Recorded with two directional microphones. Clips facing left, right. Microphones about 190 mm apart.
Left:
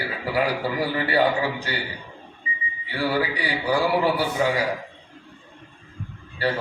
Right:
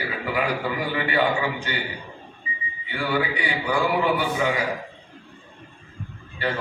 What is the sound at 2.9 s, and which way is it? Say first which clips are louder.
A man's voice: left 1 dB; 35° left (ahead or behind).